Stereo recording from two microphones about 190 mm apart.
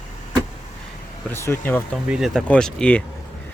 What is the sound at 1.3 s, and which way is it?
Speech, 10° left (ahead or behind).